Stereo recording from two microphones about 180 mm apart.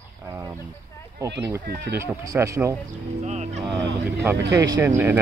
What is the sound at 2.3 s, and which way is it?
Speech, 10° right (ahead or behind).